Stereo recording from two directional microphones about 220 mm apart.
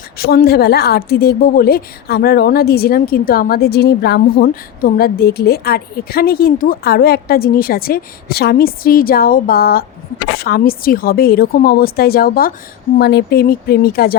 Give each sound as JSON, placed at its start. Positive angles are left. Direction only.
{"t": 0.2, "sound": "a woman's voice", "side_deg": 45}